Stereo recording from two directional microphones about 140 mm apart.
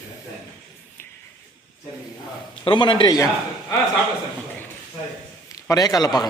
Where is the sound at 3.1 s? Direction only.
25° left (ahead or behind).